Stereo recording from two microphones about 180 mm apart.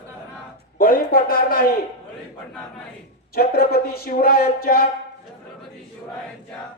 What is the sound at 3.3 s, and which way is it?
A man's voice, 55° left (ahead or behind).